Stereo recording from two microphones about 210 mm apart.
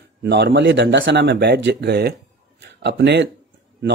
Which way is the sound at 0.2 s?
55° right (ahead or behind).